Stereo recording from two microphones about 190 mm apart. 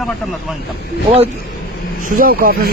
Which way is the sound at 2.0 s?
45° right (ahead or behind).